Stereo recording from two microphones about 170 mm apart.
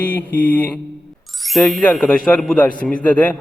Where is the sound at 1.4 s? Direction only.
Centre (ahead or behind).